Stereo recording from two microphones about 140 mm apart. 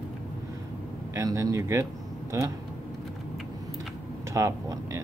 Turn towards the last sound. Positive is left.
turn(degrees=-25)  # may be behind; listen again after turning